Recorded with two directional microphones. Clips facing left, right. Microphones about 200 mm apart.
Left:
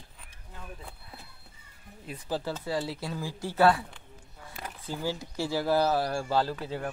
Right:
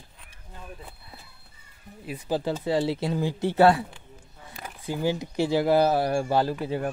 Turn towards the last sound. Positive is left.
turn(degrees=-15)  # may be behind; listen again after turning